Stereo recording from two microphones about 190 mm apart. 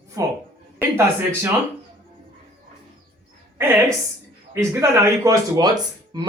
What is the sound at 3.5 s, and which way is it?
A woman's voice, 15° right (ahead or behind).